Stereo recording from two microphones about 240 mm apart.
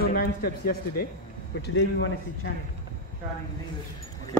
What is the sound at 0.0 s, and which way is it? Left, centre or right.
A man's voice, left.